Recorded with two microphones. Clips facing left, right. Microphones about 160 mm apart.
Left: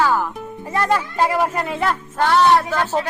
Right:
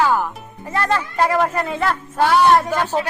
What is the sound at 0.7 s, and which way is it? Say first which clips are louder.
Speech: left 1 dB; 10° left (ahead or behind).